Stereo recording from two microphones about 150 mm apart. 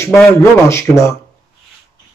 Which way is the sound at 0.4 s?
20° left (ahead or behind).